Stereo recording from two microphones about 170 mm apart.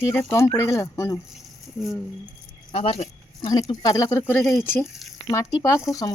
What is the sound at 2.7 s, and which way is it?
Speech, 35° left (ahead or behind).